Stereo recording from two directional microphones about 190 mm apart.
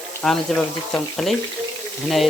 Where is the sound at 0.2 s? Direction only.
5° left (ahead or behind).